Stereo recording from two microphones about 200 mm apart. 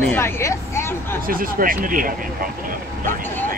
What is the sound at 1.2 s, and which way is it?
Speech, 45° right (ahead or behind).